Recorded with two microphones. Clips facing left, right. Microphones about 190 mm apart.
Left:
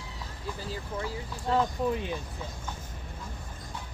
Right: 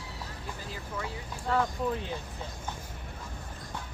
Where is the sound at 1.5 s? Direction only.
15° left (ahead or behind).